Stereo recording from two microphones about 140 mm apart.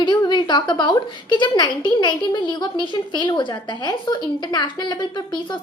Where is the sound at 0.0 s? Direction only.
35° left (ahead or behind).